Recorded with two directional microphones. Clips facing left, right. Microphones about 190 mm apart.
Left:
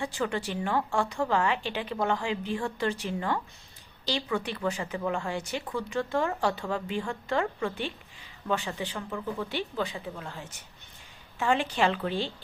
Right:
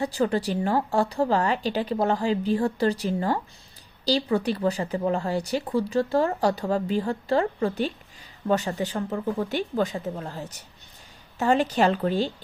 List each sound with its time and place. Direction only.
0.0 s speech: 35° right (ahead or behind)